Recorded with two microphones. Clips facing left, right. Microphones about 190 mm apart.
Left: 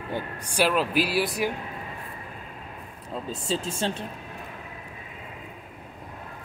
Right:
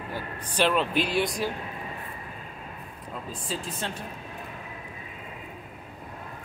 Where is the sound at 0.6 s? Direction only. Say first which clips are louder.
Left 1 dB; 5° left (ahead or behind).